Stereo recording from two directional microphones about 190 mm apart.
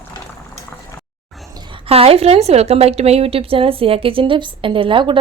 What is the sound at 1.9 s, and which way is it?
A woman's voice, 30° right (ahead or behind).